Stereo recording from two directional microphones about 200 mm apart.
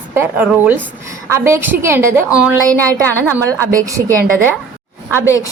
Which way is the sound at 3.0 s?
10° left (ahead or behind).